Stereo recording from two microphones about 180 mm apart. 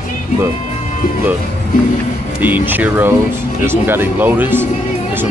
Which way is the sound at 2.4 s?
10° right (ahead or behind).